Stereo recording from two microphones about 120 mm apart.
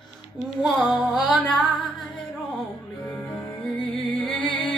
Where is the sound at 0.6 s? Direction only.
Centre (ahead or behind).